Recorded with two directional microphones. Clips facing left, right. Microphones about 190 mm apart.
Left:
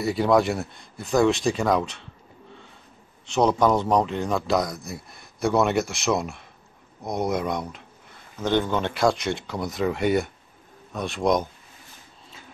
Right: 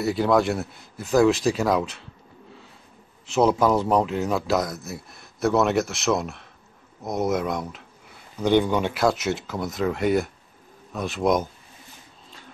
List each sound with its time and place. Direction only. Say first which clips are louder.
0.0 s a man's voice: even; centre (ahead or behind)
3.3 s a man's voice: right 1 dB; 5° right (ahead or behind)